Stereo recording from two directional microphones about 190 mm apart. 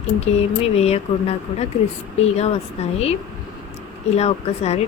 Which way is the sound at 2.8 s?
35° left (ahead or behind).